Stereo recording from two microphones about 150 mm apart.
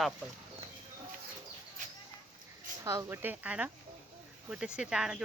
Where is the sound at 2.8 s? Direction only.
20° right (ahead or behind).